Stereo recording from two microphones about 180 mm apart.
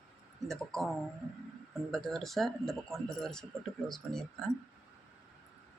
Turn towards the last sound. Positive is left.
turn(degrees=5)  # may be behind; listen again after turning